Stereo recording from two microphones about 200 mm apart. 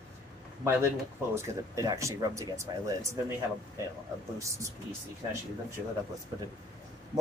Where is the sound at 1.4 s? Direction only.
15° right (ahead or behind).